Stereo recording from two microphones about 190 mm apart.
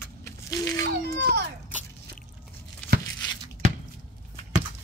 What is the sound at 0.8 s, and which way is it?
Children playing, 55° right (ahead or behind).